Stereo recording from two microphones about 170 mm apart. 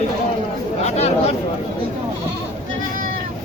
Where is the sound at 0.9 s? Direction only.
40° left (ahead or behind).